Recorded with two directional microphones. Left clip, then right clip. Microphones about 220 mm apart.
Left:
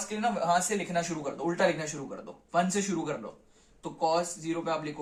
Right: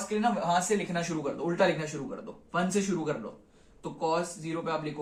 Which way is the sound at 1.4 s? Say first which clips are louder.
Even; 40° left (ahead or behind).